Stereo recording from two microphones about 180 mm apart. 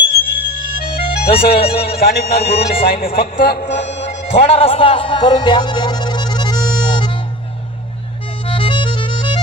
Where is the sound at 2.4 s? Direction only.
30° left (ahead or behind).